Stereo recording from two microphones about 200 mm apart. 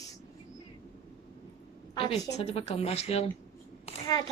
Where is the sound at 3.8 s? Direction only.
20° left (ahead or behind).